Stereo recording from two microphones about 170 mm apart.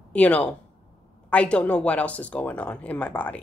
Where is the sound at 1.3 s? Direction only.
5° left (ahead or behind).